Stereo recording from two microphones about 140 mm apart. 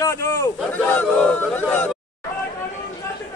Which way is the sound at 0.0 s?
20° left (ahead or behind).